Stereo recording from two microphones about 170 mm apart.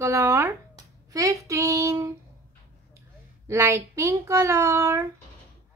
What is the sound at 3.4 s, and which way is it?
A child's voice, 15° right (ahead or behind).